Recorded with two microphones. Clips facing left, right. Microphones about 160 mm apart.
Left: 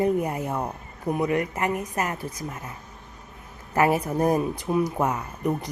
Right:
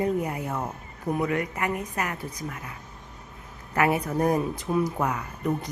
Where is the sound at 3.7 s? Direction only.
30° left (ahead or behind).